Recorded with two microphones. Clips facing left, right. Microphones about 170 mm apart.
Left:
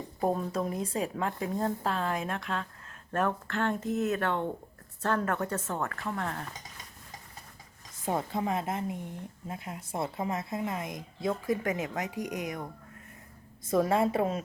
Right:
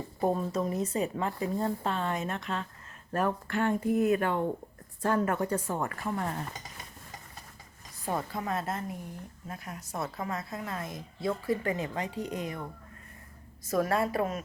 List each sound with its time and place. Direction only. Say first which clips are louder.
0.2 s a woman's voice: right 1 dB; centre (ahead or behind)
8.0 s a woman's voice: left 2 dB; 20° left (ahead or behind)
13.7 s a woman's voice: left 2 dB; 20° left (ahead or behind)